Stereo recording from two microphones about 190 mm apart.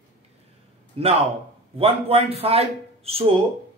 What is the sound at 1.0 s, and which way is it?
A man's voice, 30° right (ahead or behind).